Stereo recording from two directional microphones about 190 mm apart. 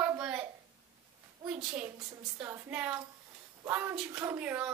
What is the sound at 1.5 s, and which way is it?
A woman's voice, 5° right (ahead or behind).